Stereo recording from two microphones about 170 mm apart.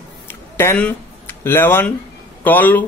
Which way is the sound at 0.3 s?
15° left (ahead or behind).